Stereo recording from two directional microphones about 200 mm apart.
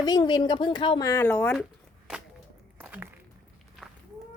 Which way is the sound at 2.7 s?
10° right (ahead or behind).